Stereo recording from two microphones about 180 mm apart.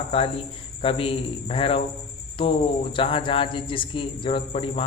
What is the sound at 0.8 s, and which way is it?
A man's voice, 30° left (ahead or behind).